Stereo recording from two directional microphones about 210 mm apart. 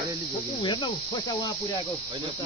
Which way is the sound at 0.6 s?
20° left (ahead or behind).